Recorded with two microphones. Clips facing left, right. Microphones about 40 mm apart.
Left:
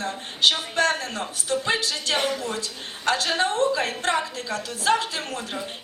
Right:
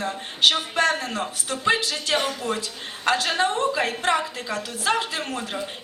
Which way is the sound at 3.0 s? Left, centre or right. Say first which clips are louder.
Right 1 dB; centre.